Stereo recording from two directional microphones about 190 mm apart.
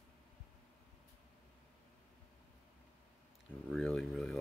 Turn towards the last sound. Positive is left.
turn(degrees=0)  # may be behind; listen again after turning